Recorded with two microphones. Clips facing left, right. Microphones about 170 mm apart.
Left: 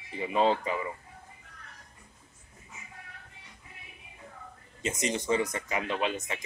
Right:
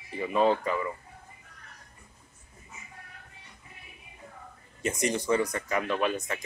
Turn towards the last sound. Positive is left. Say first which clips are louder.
# right 3 dB
turn(degrees=20)  # may be behind; listen again after turning